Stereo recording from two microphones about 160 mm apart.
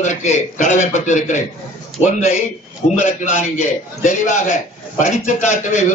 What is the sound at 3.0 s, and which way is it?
A man's voice, 50° left (ahead or behind).